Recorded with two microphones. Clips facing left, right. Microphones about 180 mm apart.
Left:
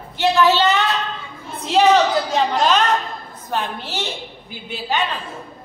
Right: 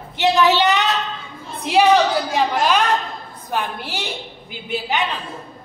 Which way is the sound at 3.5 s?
15° right (ahead or behind).